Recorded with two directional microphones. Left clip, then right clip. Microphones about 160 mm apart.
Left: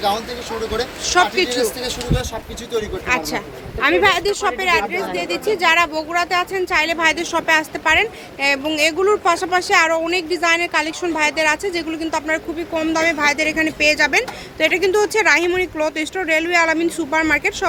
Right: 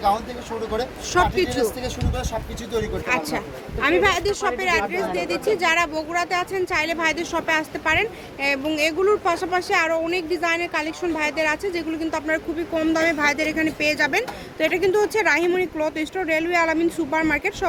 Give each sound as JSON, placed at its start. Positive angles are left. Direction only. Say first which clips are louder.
{"t": 1.0, "sound": "speech", "louder": "left 4 dB", "side_deg": -5}
{"t": 1.5, "sound": "speech", "louder": "left 3 dB", "side_deg": -30}
{"t": 3.1, "sound": "a woman's voice", "louder": "left 5 dB", "side_deg": 0}